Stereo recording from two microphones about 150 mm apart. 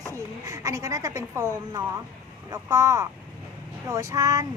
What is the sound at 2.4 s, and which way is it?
A child's voice, 20° right (ahead or behind).